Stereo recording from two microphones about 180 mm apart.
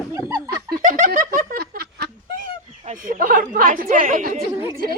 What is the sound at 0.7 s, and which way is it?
Giggle, 50° right (ahead or behind).